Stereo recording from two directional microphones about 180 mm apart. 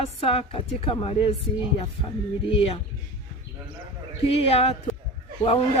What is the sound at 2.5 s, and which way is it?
Speech, 30° left (ahead or behind).